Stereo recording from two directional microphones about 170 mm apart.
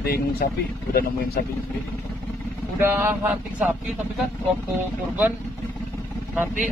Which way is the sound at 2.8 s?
10° right (ahead or behind).